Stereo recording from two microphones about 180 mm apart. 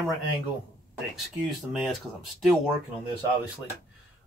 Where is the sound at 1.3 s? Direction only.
Centre (ahead or behind).